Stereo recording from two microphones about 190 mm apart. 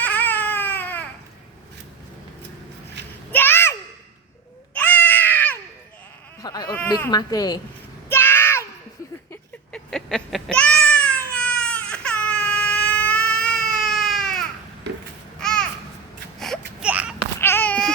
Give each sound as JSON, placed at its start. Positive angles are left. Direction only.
{"t": 0.0, "sound": "baby cry", "side_deg": 10}
{"t": 3.3, "sound": "a sound", "side_deg": 10}
{"t": 6.4, "sound": "sheep", "side_deg": 20}
{"t": 6.8, "sound": "a woman's voice", "side_deg": 20}
{"t": 8.1, "sound": "a sound", "side_deg": 10}
{"t": 9.3, "sound": "cat", "side_deg": 5}
{"t": 15.4, "sound": "a sound", "side_deg": 5}
{"t": 16.4, "sound": "wail", "side_deg": 0}
{"t": 17.4, "sound": "babbling", "side_deg": 10}